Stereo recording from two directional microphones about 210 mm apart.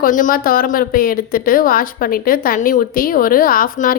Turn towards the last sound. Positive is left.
turn(degrees=40)  # may be behind; listen again after turning